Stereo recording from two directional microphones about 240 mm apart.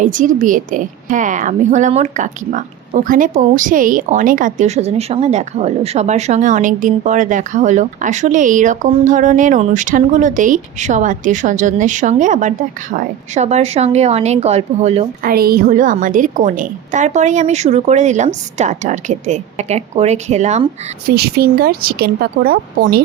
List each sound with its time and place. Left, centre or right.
0.0 s a woman's voice: right
21.2 s a woman's voice: right